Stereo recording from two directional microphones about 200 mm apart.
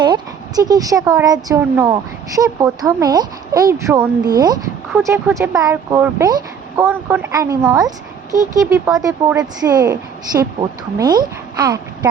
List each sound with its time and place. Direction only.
0.0 s a woman's voice: 20° right (ahead or behind)